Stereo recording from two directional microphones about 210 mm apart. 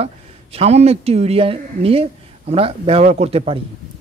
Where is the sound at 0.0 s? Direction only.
30° right (ahead or behind).